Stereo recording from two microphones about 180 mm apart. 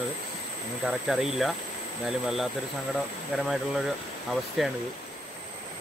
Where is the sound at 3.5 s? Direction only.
Centre (ahead or behind).